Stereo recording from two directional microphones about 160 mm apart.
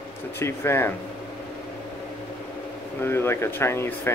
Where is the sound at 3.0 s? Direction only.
15° left (ahead or behind).